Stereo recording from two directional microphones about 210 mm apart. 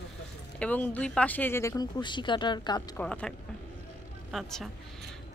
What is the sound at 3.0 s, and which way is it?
Speech, 5° left (ahead or behind).